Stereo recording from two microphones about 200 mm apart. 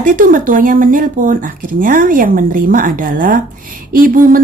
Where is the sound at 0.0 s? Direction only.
45° right (ahead or behind).